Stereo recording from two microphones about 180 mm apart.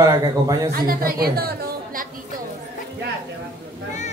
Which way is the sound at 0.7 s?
55° right (ahead or behind).